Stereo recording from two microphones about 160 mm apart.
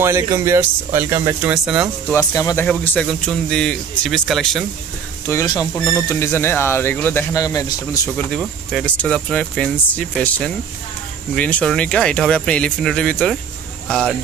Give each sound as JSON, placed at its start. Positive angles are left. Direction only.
{"t": 0.0, "sound": "speech", "side_deg": -15}
{"t": 1.5, "sound": "speech", "side_deg": -5}
{"t": 2.1, "sound": "speech", "side_deg": 20}
{"t": 2.6, "sound": "speech", "side_deg": 10}
{"t": 5.2, "sound": "speech", "side_deg": 20}
{"t": 8.3, "sound": "speech", "side_deg": 5}